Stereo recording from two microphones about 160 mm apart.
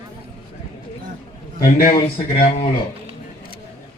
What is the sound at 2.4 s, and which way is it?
Speech, 40° left (ahead or behind).